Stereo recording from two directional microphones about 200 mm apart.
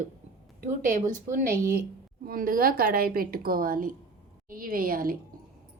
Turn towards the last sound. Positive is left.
turn(degrees=-45)  # may be behind; listen again after turning